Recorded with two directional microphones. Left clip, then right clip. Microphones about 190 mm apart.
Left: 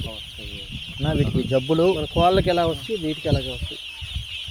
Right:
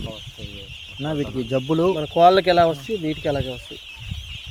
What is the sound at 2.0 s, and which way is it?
Speech, 45° right (ahead or behind).